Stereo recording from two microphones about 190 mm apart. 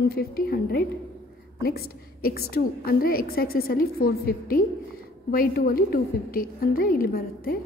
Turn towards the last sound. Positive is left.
turn(degrees=50)  # may be behind; listen again after turning